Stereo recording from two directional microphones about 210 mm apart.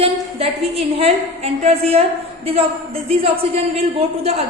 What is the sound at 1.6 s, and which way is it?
Speech, 30° right (ahead or behind).